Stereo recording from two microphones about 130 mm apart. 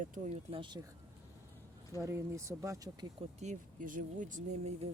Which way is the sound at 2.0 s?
20° right (ahead or behind).